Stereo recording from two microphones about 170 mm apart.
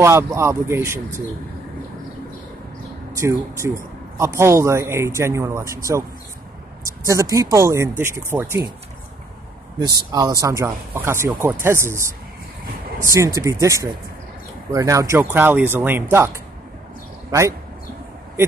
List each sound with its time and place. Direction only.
0.0 s speech: 15° right (ahead or behind)
3.2 s speech: 15° right (ahead or behind)
9.8 s speech: 25° right (ahead or behind)
13.0 s speech: 15° right (ahead or behind)
17.3 s speech: 15° right (ahead or behind)